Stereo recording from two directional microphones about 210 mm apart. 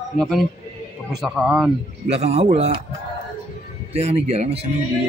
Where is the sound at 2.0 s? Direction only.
30° right (ahead or behind).